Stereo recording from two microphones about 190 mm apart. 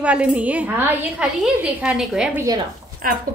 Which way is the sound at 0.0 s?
5° right (ahead or behind).